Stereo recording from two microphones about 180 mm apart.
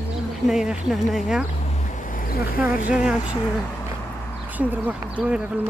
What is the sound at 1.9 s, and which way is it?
Vehicle, 50° left (ahead or behind).